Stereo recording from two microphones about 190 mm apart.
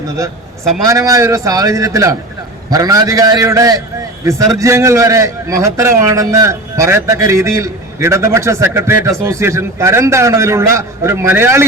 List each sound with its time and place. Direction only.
0.9 s a man's voice: 15° right (ahead or behind)